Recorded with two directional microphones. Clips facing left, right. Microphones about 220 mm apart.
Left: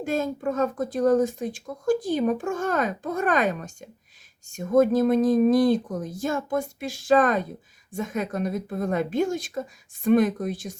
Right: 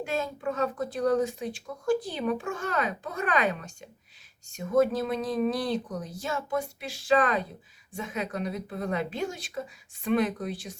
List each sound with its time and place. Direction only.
0.0 s speech: 45° left (ahead or behind)